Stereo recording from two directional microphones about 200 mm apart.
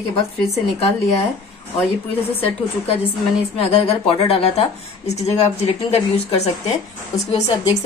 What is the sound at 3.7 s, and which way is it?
Speech, 30° left (ahead or behind).